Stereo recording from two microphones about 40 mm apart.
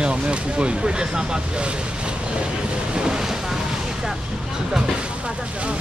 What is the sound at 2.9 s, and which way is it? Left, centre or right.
Ocean, right.